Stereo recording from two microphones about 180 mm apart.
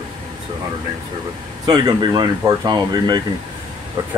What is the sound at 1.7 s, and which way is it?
Speech, 25° right (ahead or behind).